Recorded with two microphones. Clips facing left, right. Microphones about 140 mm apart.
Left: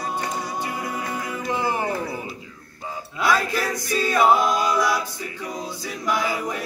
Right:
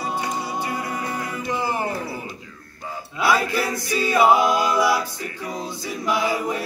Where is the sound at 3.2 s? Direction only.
10° right (ahead or behind).